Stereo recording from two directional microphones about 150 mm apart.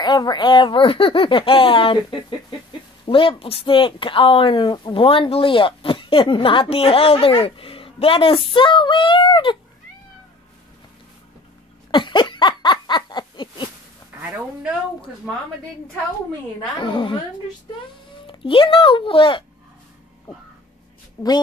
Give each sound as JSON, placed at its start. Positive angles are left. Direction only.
{"t": 0.0, "sound": "speech", "side_deg": 30}
{"t": 11.9, "sound": "a sound", "side_deg": 30}
{"t": 14.2, "sound": "a sound", "side_deg": -5}
{"t": 16.8, "sound": "speech", "side_deg": 35}
{"t": 18.2, "sound": "speech", "side_deg": 35}
{"t": 21.2, "sound": "a woman's voice", "side_deg": 20}